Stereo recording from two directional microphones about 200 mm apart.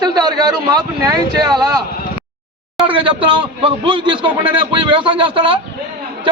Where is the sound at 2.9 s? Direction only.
25° right (ahead or behind).